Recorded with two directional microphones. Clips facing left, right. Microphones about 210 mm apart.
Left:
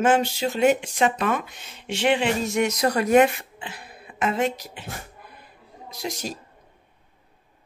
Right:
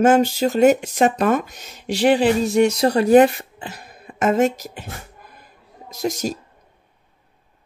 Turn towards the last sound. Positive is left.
turn(degrees=-45)  # may be behind; listen again after turning